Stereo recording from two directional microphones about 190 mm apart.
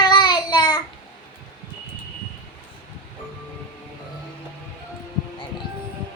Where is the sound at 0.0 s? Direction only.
25° left (ahead or behind).